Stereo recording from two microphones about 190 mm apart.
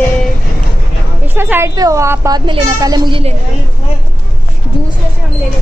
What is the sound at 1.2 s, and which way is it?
A woman's voice, 10° right (ahead or behind).